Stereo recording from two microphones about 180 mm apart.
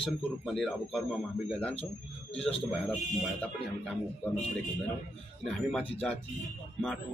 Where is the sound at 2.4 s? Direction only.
35° left (ahead or behind).